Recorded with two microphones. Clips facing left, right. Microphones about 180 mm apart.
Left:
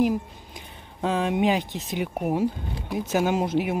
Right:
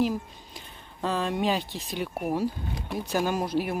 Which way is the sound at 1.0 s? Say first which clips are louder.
Left 4 dB; 15° left (ahead or behind).